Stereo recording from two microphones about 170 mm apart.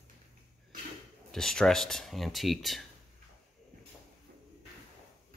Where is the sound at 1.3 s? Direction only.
5° left (ahead or behind).